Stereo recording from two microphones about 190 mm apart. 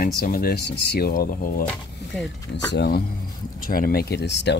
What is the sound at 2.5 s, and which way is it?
Speech, 60° left (ahead or behind).